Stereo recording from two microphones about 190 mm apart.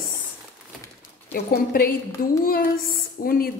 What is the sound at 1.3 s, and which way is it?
Speech, 50° left (ahead or behind).